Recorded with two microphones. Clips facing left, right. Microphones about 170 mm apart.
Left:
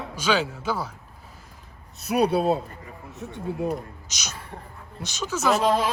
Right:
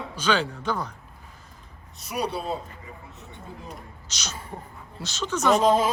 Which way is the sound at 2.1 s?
60° left (ahead or behind).